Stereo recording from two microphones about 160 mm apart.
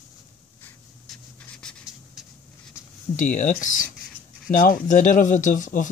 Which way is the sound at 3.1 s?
50° left (ahead or behind).